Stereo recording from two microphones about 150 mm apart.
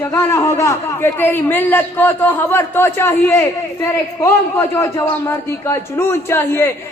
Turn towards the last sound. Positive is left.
turn(degrees=15)  # may be behind; listen again after turning